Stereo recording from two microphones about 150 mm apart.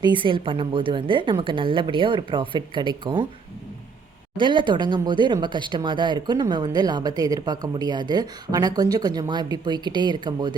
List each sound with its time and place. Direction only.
0.0 s a woman's voice: 35° right (ahead or behind)
4.4 s speech: 30° right (ahead or behind)